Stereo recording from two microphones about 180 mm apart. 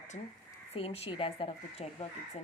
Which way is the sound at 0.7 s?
35° left (ahead or behind).